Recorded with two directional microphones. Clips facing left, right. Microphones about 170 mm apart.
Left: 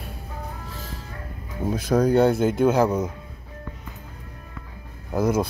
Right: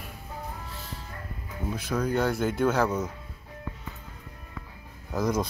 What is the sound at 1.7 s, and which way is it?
Speech, 40° left (ahead or behind).